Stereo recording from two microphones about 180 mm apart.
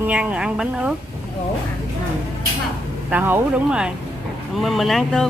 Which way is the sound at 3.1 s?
10° right (ahead or behind).